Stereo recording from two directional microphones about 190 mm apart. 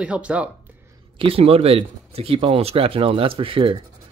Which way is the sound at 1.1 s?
30° right (ahead or behind).